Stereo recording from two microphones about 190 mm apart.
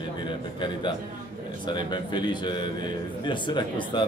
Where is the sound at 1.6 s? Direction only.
25° left (ahead or behind).